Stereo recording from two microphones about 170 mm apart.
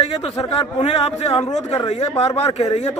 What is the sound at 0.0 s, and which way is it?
A man's voice, 35° left (ahead or behind).